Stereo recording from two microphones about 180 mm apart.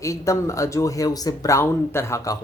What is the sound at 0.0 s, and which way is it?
Speech, 15° left (ahead or behind).